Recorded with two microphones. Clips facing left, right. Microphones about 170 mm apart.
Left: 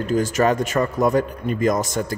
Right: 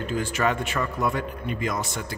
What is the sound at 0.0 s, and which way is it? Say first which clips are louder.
A man's voice: left 6 dB; 40° left (ahead or behind).